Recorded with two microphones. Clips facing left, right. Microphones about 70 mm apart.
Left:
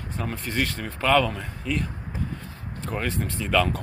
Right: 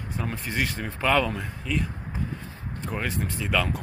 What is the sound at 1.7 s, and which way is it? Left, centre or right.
Speech, centre.